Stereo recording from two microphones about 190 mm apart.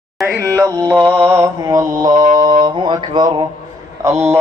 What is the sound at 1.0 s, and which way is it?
Mantra, 10° right (ahead or behind).